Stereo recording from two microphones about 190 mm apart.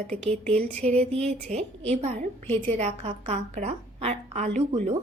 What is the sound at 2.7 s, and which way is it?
A woman's voice, 35° right (ahead or behind).